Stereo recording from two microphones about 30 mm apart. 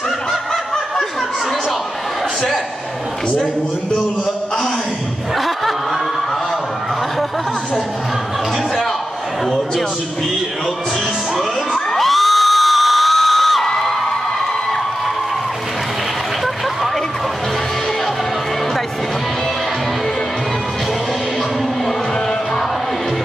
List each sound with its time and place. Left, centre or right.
11.7 s crowd: centre
12.1 s crowd: centre